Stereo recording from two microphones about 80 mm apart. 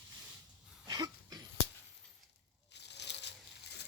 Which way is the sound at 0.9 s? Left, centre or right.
Right.